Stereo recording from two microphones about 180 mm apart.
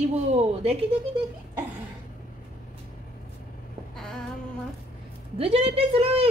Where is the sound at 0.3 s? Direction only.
35° right (ahead or behind).